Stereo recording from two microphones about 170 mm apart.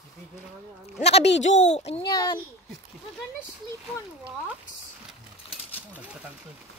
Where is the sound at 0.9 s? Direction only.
40° left (ahead or behind).